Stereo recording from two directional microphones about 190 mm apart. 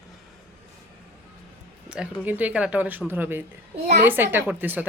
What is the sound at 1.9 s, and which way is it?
Speech, 5° right (ahead or behind).